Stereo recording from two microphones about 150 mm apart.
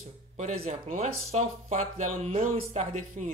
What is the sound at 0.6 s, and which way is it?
Speech, 55° right (ahead or behind).